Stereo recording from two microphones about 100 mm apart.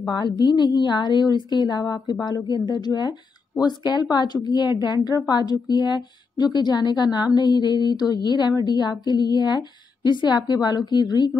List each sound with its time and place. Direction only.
0.1 s a woman's voice: 45° left (ahead or behind)